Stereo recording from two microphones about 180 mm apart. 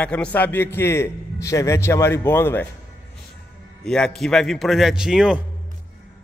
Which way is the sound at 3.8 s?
5° left (ahead or behind).